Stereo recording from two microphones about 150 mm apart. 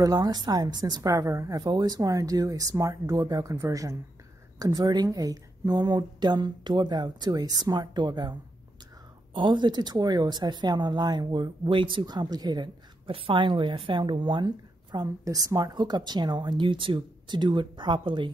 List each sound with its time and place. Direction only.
0.0 s speech: 25° right (ahead or behind)